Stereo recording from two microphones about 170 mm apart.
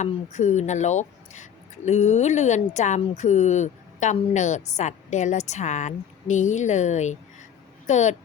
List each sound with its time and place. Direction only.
0.0 s speech: 45° left (ahead or behind)